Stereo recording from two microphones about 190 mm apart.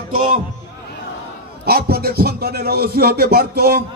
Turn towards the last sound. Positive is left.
turn(degrees=-55)  # may be behind; listen again after turning